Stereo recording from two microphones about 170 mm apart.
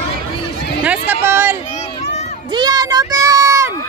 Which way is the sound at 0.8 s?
10° right (ahead or behind).